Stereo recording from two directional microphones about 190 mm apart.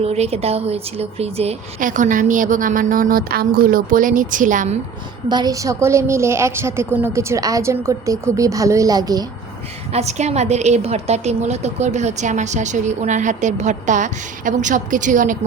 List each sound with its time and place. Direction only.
0.0 s a woman's voice: 35° right (ahead or behind)
5.3 s a woman's voice: 20° right (ahead or behind)
9.9 s a woman's voice: 35° right (ahead or behind)